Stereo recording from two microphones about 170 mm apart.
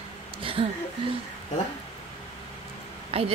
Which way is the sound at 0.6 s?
35° right (ahead or behind).